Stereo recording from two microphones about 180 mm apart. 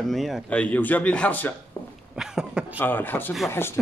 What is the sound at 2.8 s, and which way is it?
Speech, 10° left (ahead or behind).